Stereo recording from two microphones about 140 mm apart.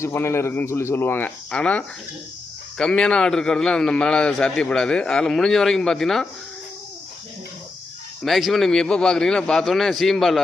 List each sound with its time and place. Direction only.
0.0 s a man's voice: 20° left (ahead or behind); by 6.2 s 5° left (ahead or behind)
8.2 s a man's voice: centre (ahead or behind)